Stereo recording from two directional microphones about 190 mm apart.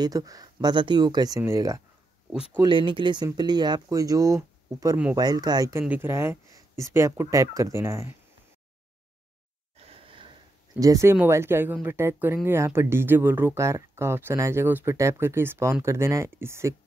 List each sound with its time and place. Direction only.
0.0 s speech: 20° right (ahead or behind)
9.9 s speech: 25° right (ahead or behind)